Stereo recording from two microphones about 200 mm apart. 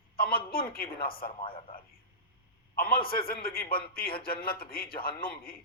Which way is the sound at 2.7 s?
50° left (ahead or behind).